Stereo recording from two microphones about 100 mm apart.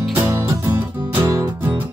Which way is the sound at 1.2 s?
30° right (ahead or behind).